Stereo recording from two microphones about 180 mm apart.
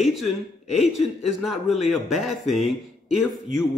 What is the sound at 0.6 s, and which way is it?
Speech, 35° left (ahead or behind).